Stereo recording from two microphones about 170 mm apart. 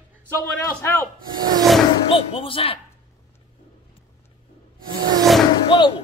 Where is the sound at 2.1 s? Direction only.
30° left (ahead or behind).